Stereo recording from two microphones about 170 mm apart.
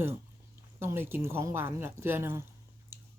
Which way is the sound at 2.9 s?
15° right (ahead or behind).